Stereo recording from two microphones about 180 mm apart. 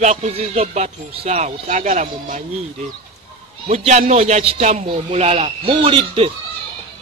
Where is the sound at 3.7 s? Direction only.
40° right (ahead or behind).